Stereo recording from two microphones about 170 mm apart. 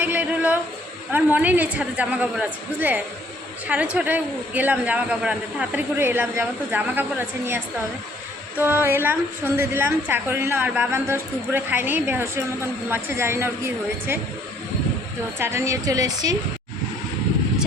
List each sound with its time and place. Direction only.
0.0 s a sound: 10° right (ahead or behind)
1.1 s a man's voice: 10° right (ahead or behind)
8.5 s a man's voice: 10° right (ahead or behind)
15.4 s a man's voice: 15° right (ahead or behind)